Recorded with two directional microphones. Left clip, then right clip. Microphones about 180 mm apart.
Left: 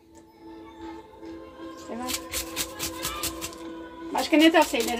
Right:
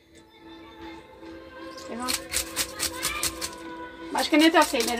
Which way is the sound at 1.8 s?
Centre (ahead or behind).